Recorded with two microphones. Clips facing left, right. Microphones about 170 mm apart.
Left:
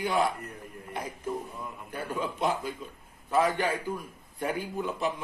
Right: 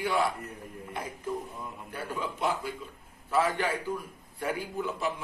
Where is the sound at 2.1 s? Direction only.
20° left (ahead or behind).